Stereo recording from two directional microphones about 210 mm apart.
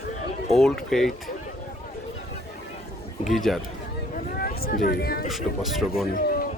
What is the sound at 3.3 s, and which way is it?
Speech, centre (ahead or behind).